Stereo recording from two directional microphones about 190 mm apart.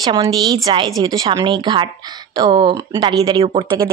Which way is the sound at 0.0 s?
20° right (ahead or behind).